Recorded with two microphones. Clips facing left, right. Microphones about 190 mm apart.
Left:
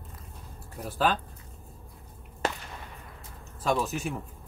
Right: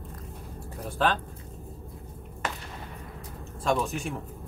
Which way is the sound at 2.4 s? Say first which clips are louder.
Left 3 dB; 30° left (ahead or behind).